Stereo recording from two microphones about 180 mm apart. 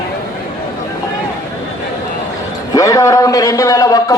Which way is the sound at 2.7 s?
20° left (ahead or behind).